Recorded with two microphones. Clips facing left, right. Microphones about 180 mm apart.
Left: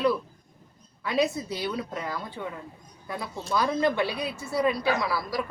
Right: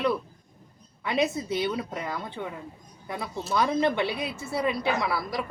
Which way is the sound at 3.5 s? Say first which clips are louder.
Even; 25° right (ahead or behind).